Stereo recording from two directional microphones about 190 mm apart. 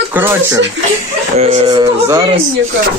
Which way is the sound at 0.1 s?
10° right (ahead or behind).